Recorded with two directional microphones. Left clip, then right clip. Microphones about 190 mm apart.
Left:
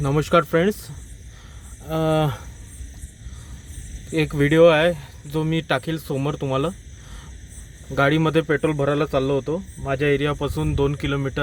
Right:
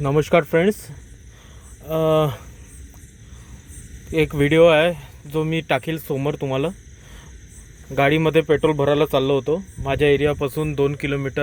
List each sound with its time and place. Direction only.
0.0 s speech: 5° right (ahead or behind)
1.9 s speech: centre (ahead or behind)
4.1 s speech: 5° right (ahead or behind)
7.9 s speech: 5° right (ahead or behind); by 10.1 s 20° right (ahead or behind)
10.2 s speech: 5° right (ahead or behind)